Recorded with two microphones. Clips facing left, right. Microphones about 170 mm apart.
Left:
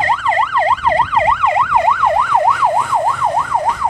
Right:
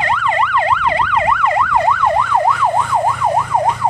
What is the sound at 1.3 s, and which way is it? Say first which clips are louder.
Emergency vehicle: left 1 dB; 20° left (ahead or behind).